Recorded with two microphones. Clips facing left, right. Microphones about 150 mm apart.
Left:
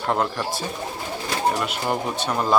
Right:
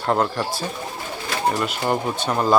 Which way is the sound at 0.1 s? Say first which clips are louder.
Right 3 dB; centre (ahead or behind).